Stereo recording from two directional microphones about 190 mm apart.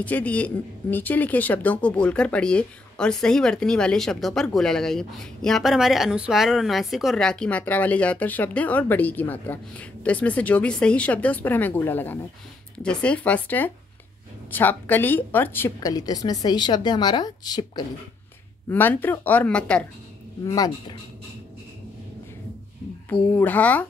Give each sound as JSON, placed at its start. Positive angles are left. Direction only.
{"t": 0.0, "sound": "a woman's voice", "side_deg": 10}
{"t": 18.7, "sound": "speech", "side_deg": 10}
{"t": 20.4, "sound": "a woman's voice", "side_deg": 20}
{"t": 23.3, "sound": "speech", "side_deg": 10}